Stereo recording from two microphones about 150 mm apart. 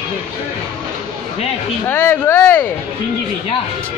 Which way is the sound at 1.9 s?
15° left (ahead or behind).